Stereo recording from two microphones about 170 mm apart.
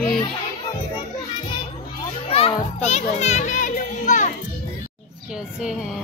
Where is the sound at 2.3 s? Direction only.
40° left (ahead or behind).